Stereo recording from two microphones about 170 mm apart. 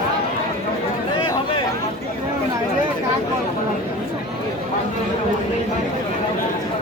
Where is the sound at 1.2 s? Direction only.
30° left (ahead or behind).